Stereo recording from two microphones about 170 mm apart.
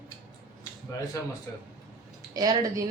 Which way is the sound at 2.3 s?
20° right (ahead or behind).